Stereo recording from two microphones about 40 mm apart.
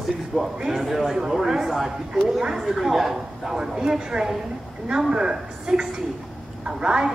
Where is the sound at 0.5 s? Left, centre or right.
Centre.